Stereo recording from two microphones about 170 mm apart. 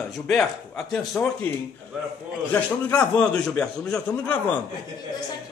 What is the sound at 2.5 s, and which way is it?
A man's voice, 10° left (ahead or behind).